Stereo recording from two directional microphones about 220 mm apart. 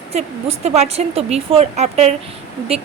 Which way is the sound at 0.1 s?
30° right (ahead or behind).